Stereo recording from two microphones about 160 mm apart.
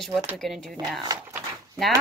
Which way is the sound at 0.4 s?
Centre (ahead or behind).